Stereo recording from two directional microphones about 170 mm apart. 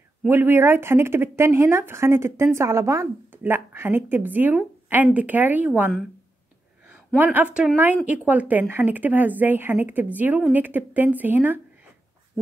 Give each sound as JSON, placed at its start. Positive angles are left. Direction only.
{"t": 0.3, "sound": "speech", "side_deg": -10}
{"t": 6.9, "sound": "speech", "side_deg": -5}